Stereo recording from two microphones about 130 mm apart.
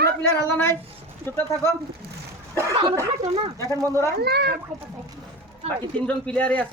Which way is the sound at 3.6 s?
20° left (ahead or behind).